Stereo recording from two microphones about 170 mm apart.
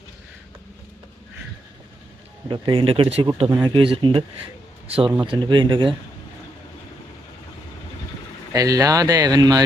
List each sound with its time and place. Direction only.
2.5 s speech: 30° right (ahead or behind)
8.5 s speech: 20° right (ahead or behind)